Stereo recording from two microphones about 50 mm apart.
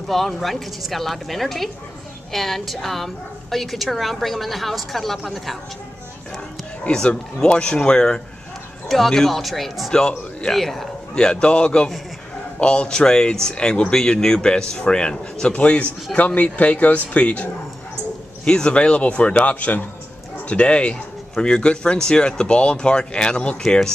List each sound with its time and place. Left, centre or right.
0.1 s speech: centre
6.8 s speech: centre
8.8 s speech: centre
11.1 s speech: centre
15.5 s speech: left